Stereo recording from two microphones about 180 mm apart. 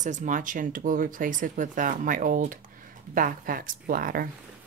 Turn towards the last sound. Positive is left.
turn(degrees=-50)  # may be behind; listen again after turning